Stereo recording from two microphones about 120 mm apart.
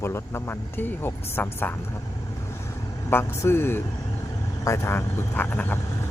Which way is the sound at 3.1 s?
20° left (ahead or behind).